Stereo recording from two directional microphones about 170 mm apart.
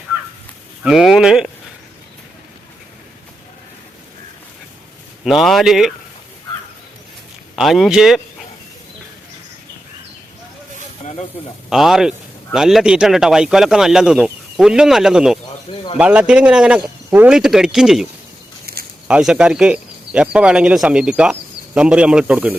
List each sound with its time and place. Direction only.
0.9 s speech: 5° right (ahead or behind)
5.2 s speech: centre (ahead or behind)
7.5 s speech: centre (ahead or behind)
11.0 s snake: 40° left (ahead or behind)
11.7 s speech: centre (ahead or behind)
18.6 s a sound: 65° right (ahead or behind)
19.0 s speech: 5° right (ahead or behind)